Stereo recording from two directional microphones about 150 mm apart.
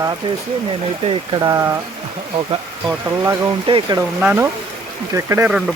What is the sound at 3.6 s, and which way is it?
Speech, 35° right (ahead or behind).